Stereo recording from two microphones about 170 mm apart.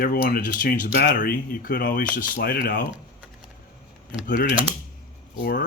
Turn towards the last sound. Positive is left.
turn(degrees=65)  # may be behind; listen again after turning